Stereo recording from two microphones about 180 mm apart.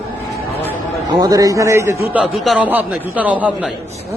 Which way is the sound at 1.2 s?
20° right (ahead or behind).